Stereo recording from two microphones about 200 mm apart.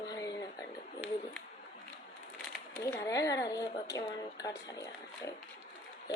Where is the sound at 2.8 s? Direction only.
15° left (ahead or behind).